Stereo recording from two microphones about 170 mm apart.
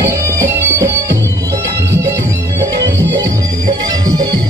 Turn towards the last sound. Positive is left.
turn(degrees=-25)  # may be behind; listen again after turning